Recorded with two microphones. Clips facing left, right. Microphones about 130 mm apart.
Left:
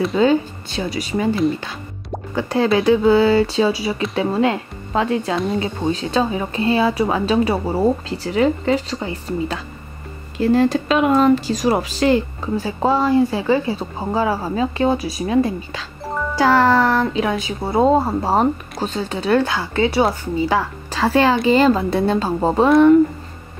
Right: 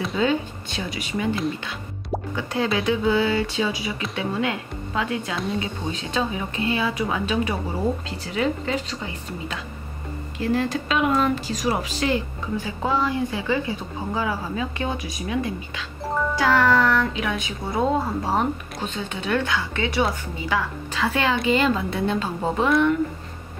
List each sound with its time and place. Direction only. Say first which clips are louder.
0.2 s speech: left 6 dB; 35° left (ahead or behind)
2.3 s speech: left 8 dB; 35° left (ahead or behind)